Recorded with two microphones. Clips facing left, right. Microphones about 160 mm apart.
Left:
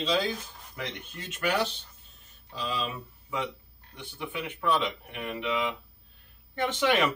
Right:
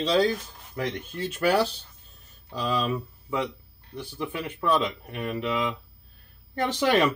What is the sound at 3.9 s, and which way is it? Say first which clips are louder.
Speech: right 5 dB; 40° right (ahead or behind).